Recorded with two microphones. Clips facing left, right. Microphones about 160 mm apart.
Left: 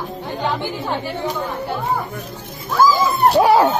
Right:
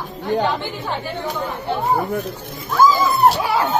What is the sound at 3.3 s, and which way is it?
Speech, 40° left (ahead or behind).